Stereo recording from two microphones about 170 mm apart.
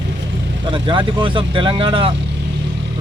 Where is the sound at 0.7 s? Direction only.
30° right (ahead or behind).